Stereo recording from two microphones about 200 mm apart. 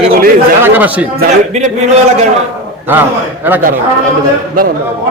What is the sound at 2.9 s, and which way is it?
Speech, 10° right (ahead or behind).